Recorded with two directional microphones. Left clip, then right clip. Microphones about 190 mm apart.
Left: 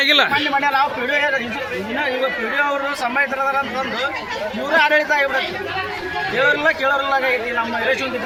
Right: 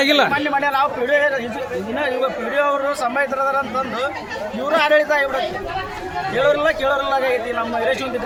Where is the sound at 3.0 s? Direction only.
30° right (ahead or behind).